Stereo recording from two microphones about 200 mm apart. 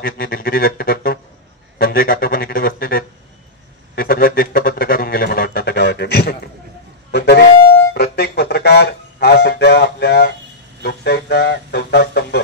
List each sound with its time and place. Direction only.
0.0 s speech: 45° left (ahead or behind)
7.1 s wind instrument: 55° left (ahead or behind)
10.8 s music: 55° left (ahead or behind)